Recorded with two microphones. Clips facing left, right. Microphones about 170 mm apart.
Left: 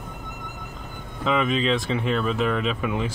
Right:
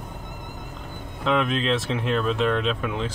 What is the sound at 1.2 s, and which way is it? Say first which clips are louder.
Speech: left 1 dB; centre (ahead or behind).